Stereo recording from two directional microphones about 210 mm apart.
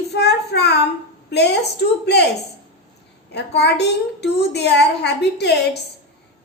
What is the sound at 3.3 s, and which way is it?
A woman's voice, 50° left (ahead or behind).